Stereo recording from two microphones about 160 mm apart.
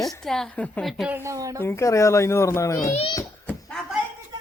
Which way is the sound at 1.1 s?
20° right (ahead or behind).